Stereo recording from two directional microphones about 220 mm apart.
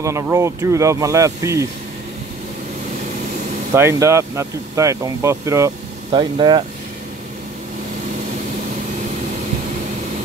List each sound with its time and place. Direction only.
0.0 s speech: 15° right (ahead or behind)
3.7 s speech: 10° right (ahead or behind)